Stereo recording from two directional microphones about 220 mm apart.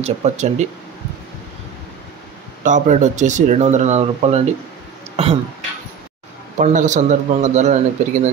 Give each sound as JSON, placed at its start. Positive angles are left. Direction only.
{"t": 0.0, "sound": "speech", "side_deg": -30}
{"t": 2.6, "sound": "speech", "side_deg": -35}
{"t": 6.6, "sound": "speech", "side_deg": -35}